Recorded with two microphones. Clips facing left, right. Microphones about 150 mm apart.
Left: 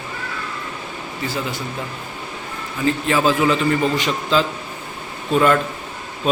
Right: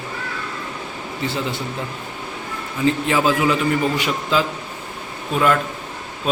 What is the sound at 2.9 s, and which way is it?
Speech, 15° right (ahead or behind).